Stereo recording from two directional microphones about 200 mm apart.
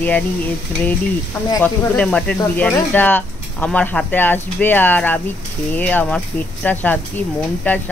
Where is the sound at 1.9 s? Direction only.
5° left (ahead or behind).